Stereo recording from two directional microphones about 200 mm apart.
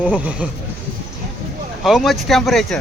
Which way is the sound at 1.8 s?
Centre (ahead or behind).